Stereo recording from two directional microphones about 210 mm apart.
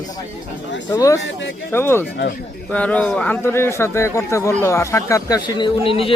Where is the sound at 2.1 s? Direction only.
50° left (ahead or behind).